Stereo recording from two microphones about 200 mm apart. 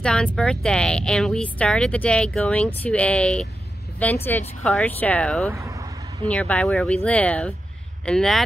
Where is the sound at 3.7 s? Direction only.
55° left (ahead or behind).